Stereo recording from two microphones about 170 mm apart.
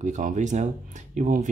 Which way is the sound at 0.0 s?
45° right (ahead or behind).